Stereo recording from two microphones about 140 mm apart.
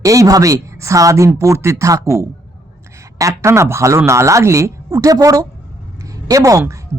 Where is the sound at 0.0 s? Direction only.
25° right (ahead or behind).